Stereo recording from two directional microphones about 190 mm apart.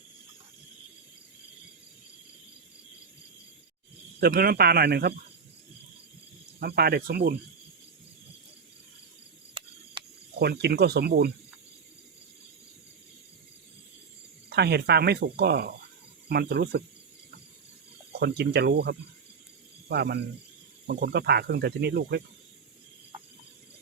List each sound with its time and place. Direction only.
4.2 s speech: 55° right (ahead or behind)
6.6 s speech: 55° right (ahead or behind)
9.6 s a sound: 30° right (ahead or behind)
10.4 s speech: 60° right (ahead or behind)
14.5 s speech: 60° right (ahead or behind)
18.1 s speech: 60° right (ahead or behind)